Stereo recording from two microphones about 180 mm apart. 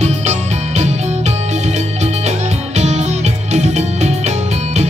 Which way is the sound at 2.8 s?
40° right (ahead or behind).